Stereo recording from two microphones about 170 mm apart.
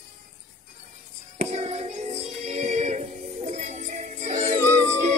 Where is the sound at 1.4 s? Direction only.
40° right (ahead or behind).